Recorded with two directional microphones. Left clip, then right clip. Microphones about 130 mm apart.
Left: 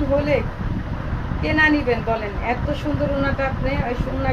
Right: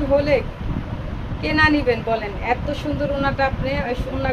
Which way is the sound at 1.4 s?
75° right (ahead or behind).